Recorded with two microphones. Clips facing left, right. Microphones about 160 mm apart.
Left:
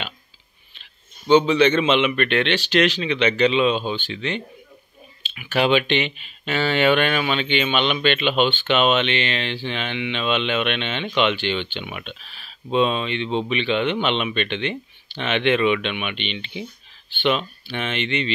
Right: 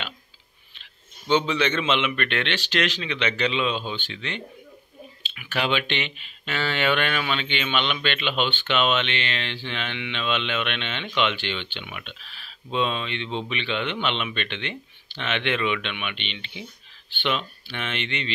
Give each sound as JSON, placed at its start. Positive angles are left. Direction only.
{"t": 1.2, "sound": "speech", "side_deg": 15}